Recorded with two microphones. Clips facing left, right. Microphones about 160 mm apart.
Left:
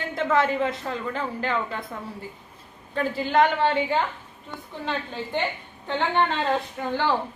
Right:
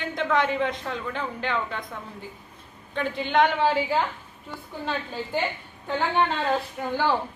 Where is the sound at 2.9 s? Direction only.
5° left (ahead or behind).